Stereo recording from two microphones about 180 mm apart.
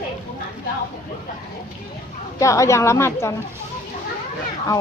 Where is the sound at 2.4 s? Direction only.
15° left (ahead or behind).